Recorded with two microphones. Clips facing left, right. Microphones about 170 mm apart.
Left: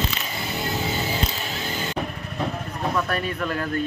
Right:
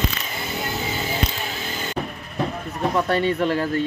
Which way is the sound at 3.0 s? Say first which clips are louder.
Right 7 dB; 25° right (ahead or behind).